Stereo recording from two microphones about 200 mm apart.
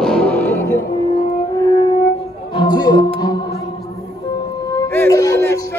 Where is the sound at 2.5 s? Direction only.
20° left (ahead or behind).